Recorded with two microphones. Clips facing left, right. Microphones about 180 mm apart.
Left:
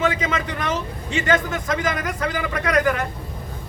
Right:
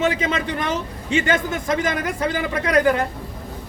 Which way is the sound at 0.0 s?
30° right (ahead or behind).